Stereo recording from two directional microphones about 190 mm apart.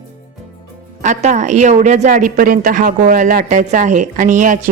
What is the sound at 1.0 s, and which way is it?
A woman's voice, 40° right (ahead or behind).